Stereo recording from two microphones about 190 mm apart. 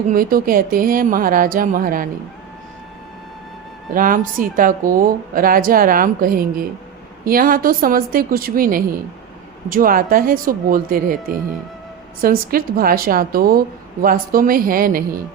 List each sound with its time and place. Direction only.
0.1 s a woman's voice: 50° right (ahead or behind)
3.9 s a woman's voice: 45° right (ahead or behind)
12.2 s a woman's voice: 50° right (ahead or behind)